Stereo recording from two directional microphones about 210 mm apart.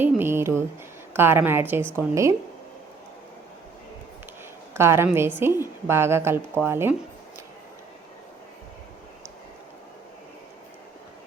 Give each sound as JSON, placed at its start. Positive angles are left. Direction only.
{"t": 0.0, "sound": "a sound", "side_deg": -10}
{"t": 1.1, "sound": "a woman's voice", "side_deg": -10}
{"t": 4.7, "sound": "a woman's voice", "side_deg": -10}